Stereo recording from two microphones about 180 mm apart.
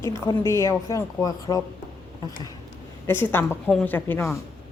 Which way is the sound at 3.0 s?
10° left (ahead or behind).